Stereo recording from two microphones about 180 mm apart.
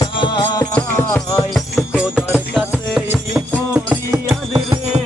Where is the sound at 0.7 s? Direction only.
10° left (ahead or behind).